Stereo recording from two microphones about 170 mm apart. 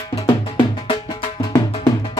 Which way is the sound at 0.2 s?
30° left (ahead or behind).